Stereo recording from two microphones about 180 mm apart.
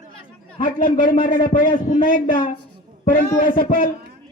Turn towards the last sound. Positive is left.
turn(degrees=50)  # may be behind; listen again after turning